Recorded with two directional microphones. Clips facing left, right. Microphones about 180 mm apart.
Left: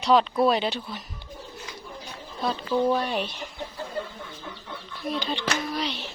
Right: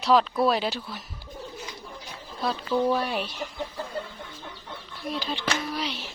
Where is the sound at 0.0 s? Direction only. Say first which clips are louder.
Left 1 dB; centre (ahead or behind).